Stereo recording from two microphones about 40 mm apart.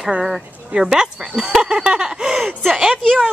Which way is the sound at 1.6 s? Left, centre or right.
Right.